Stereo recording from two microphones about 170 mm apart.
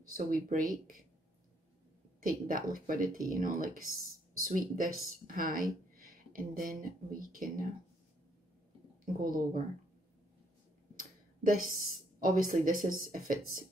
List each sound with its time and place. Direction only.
0.1 s speech: 55° right (ahead or behind)
2.2 s speech: 55° right (ahead or behind)
9.0 s speech: 55° right (ahead or behind)
11.0 s speech: 55° right (ahead or behind)